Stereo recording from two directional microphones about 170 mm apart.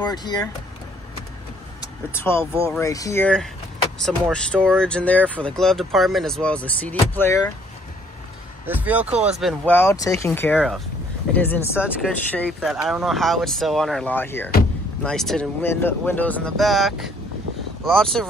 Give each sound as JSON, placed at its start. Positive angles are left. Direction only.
{"t": 0.0, "sound": "speech", "side_deg": 25}
{"t": 1.8, "sound": "speech", "side_deg": 15}
{"t": 4.0, "sound": "speech", "side_deg": 5}
{"t": 8.6, "sound": "speech", "side_deg": -10}
{"t": 9.8, "sound": "speech", "side_deg": 15}
{"t": 12.4, "sound": "speech", "side_deg": -5}